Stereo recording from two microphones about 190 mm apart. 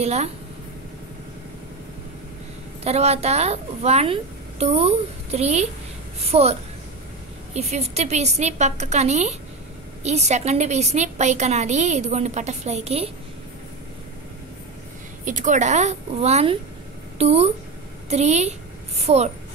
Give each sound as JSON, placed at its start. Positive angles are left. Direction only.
{"t": 0.0, "sound": "a woman's voice", "side_deg": -35}
{"t": 2.8, "sound": "a woman's voice", "side_deg": -35}
{"t": 7.5, "sound": "a woman's voice", "side_deg": -35}
{"t": 15.2, "sound": "a woman's voice", "side_deg": -40}